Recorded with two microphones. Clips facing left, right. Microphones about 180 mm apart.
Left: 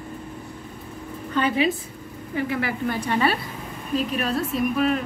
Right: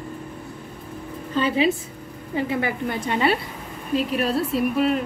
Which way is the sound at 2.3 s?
25° right (ahead or behind).